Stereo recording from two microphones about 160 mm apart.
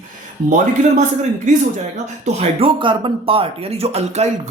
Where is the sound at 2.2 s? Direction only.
35° right (ahead or behind).